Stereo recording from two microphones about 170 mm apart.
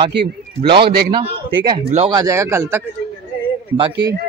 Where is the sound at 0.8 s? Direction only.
65° right (ahead or behind).